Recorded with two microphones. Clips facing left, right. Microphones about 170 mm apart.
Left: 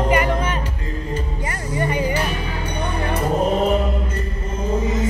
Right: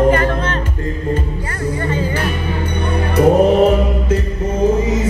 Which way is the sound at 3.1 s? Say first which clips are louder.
Right 10 dB; 80° right.